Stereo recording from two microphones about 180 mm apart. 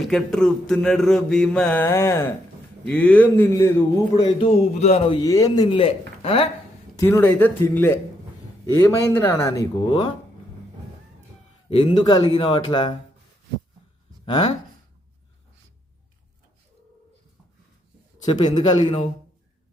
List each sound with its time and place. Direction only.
0.0 s speech: centre (ahead or behind); by 4.4 s 25° left (ahead or behind)
4.8 s speech: 35° left (ahead or behind)
7.0 s speech: 10° left (ahead or behind)
11.7 s speech: 30° left (ahead or behind)
18.3 s speech: 25° left (ahead or behind)